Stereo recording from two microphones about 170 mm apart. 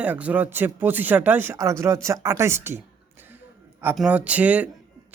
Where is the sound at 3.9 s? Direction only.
5° right (ahead or behind).